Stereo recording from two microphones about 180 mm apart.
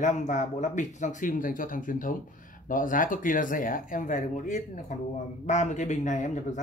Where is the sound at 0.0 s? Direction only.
45° left (ahead or behind).